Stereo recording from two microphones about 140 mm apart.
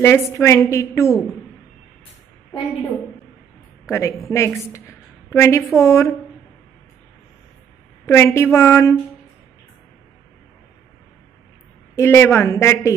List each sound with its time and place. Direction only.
0.0 s a woman's voice: 20° left (ahead or behind)
3.9 s a woman's voice: 20° left (ahead or behind)
8.1 s a woman's voice: 20° left (ahead or behind)
8.5 s a sound: 20° left (ahead or behind)
11.9 s a woman's voice: 20° left (ahead or behind)